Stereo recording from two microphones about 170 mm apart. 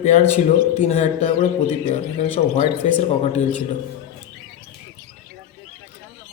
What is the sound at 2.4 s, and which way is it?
A man's voice, 40° left (ahead or behind).